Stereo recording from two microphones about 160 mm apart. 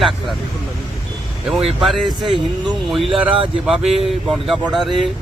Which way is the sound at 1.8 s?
Centre (ahead or behind).